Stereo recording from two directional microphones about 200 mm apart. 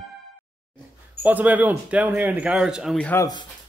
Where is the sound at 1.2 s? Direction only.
10° right (ahead or behind).